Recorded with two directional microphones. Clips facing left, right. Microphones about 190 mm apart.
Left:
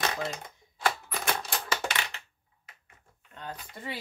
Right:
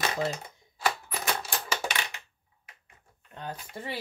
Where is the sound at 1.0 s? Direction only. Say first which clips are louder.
Even; 5° right (ahead or behind).